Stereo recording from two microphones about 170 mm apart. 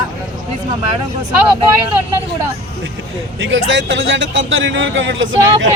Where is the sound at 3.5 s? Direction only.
90° right.